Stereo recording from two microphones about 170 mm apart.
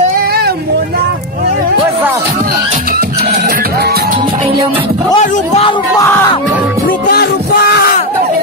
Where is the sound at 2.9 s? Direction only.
65° right (ahead or behind).